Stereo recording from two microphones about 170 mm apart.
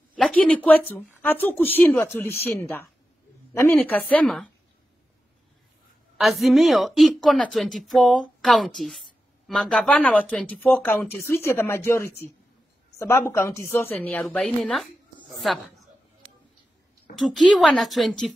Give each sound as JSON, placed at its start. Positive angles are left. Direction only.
{"t": 0.1, "sound": "speech", "side_deg": 5}
{"t": 6.1, "sound": "a woman's voice", "side_deg": 0}
{"t": 17.2, "sound": "a woman's voice", "side_deg": 0}